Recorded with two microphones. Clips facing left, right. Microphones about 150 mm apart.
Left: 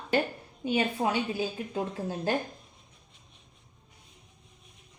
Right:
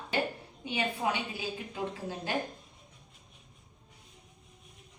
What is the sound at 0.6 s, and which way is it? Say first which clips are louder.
A woman's voice: left 5 dB; 45° left (ahead or behind).